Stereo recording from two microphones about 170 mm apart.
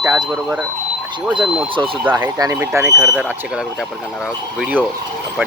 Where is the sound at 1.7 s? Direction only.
30° right (ahead or behind).